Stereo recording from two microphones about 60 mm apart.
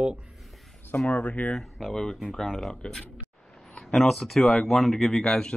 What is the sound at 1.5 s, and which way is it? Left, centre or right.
Speech, centre.